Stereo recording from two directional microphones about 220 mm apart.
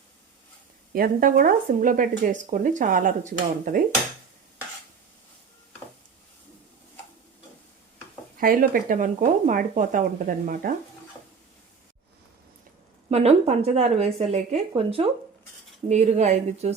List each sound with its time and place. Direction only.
0.9 s speech: 40° right (ahead or behind)
8.4 s speech: 40° right (ahead or behind)
13.1 s speech: 30° right (ahead or behind)